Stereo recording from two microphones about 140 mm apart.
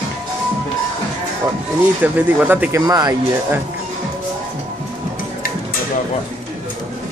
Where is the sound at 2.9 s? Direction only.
25° right (ahead or behind).